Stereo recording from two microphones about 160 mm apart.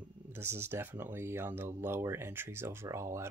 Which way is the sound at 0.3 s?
15° right (ahead or behind).